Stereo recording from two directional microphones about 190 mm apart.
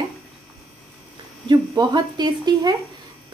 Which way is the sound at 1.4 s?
25° right (ahead or behind).